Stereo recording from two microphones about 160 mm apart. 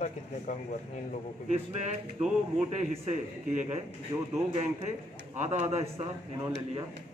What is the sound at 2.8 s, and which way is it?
Speech, 45° right (ahead or behind).